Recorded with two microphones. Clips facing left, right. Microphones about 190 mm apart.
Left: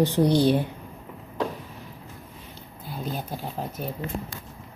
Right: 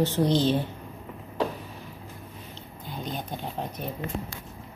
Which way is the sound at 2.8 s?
5° left (ahead or behind).